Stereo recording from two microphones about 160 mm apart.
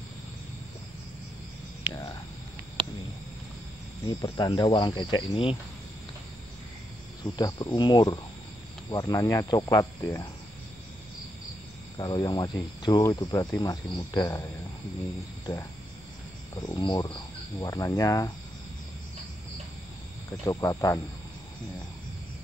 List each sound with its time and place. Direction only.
1.8 s speech: 10° right (ahead or behind)
4.2 s speech: 25° left (ahead or behind)
7.3 s speech: 25° left (ahead or behind)
12.0 s speech: 25° left (ahead or behind)
16.5 s speech: 25° left (ahead or behind)
20.4 s speech: 20° left (ahead or behind)